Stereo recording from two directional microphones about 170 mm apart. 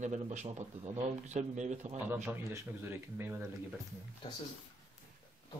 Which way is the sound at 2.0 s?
15° right (ahead or behind).